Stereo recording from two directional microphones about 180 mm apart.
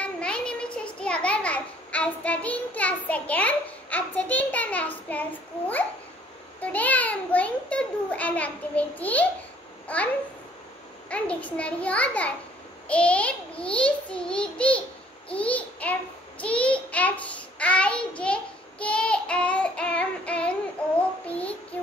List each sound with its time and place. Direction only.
0.0 s a sound: 5° left (ahead or behind)
6.6 s a child's voice: 10° left (ahead or behind)
11.1 s a child's voice: 5° left (ahead or behind)
21.3 s child singing: 10° left (ahead or behind)